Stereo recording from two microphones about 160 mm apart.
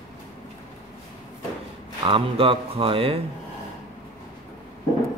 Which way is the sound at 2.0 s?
35° right (ahead or behind).